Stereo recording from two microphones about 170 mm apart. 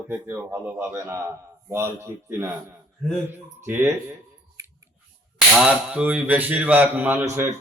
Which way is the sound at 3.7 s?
15° right (ahead or behind).